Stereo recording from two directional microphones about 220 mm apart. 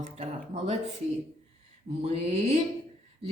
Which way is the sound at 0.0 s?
30° right (ahead or behind).